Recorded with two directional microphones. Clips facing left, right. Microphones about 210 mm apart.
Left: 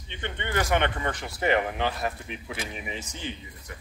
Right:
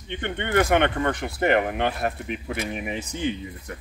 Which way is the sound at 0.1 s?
55° right (ahead or behind).